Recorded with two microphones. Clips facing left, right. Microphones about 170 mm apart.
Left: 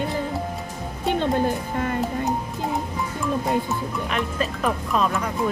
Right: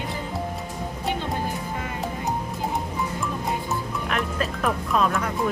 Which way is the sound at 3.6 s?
Centre (ahead or behind).